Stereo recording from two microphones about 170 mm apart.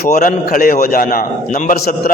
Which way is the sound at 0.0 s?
55° left (ahead or behind).